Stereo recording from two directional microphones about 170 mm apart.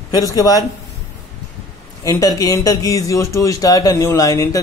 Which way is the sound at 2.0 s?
20° left (ahead or behind).